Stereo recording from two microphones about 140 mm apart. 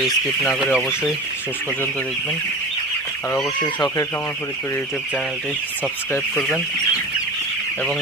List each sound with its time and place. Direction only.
0.0 s speech: 5° right (ahead or behind)
3.6 s speech: 30° left (ahead or behind)